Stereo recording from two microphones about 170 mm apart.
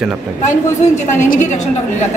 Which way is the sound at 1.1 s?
45° left (ahead or behind).